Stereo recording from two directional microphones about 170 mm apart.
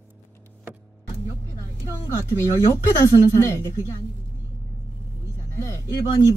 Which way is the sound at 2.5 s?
20° left (ahead or behind).